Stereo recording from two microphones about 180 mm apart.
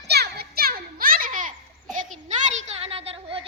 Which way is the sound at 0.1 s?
65° right (ahead or behind).